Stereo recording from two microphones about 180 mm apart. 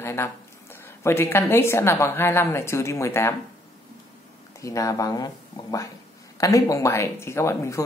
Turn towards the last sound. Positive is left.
turn(degrees=15)  # may be behind; listen again after turning